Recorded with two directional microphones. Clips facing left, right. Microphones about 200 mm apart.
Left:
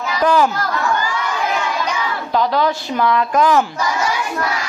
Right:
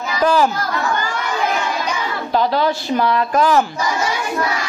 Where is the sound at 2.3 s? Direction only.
30° right (ahead or behind).